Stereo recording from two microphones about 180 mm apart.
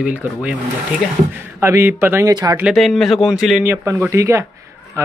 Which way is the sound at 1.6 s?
15° right (ahead or behind).